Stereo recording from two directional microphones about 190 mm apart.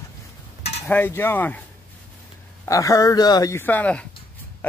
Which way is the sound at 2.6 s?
15° left (ahead or behind).